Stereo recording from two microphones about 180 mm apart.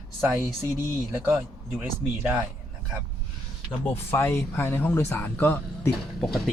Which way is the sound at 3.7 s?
10° left (ahead or behind).